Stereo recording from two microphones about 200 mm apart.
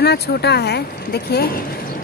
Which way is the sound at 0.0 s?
55° left (ahead or behind).